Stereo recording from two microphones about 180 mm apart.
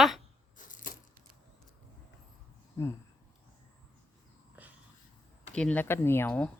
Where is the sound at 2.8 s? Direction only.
15° left (ahead or behind).